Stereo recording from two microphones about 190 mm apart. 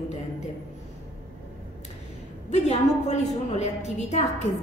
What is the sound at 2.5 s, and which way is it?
A woman's voice, 35° left (ahead or behind).